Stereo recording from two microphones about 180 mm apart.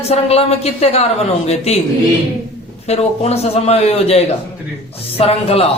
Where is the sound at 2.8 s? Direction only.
35° left (ahead or behind).